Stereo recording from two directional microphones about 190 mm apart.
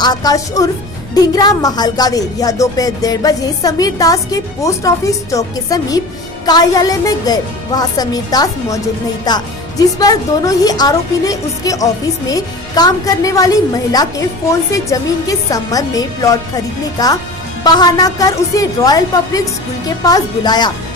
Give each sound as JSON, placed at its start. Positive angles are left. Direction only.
{"t": 0.0, "sound": "a woman's voice", "side_deg": 20}